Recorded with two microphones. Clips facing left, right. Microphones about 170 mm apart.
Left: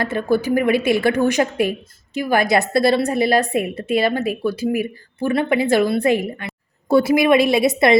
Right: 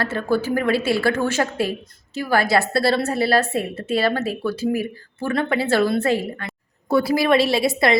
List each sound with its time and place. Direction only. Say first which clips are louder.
0.0 s a woman's voice: left 2 dB; 15° left (ahead or behind)